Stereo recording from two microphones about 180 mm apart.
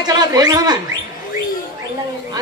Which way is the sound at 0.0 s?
20° right (ahead or behind).